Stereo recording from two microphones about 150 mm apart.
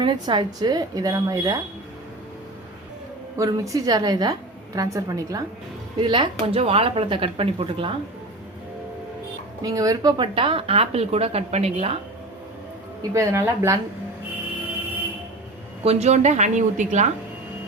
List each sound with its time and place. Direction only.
0.0 s a woman's voice: 30° right (ahead or behind)
3.3 s a woman's voice: 20° right (ahead or behind)
6.0 s a woman's voice: 35° right (ahead or behind)
9.6 s a woman's voice: 25° right (ahead or behind); by 11.9 s 45° right (ahead or behind)
13.0 s a woman's voice: 20° right (ahead or behind)
15.8 s a woman's voice: 45° right (ahead or behind)